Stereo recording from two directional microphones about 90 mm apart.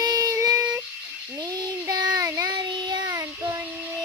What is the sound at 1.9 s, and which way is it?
Child singing, 45° right (ahead or behind).